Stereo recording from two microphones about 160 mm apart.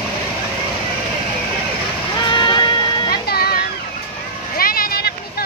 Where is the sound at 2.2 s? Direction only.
30° left (ahead or behind).